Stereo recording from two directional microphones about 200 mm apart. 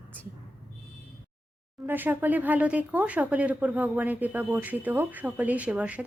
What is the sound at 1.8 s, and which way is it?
Speech, 10° right (ahead or behind).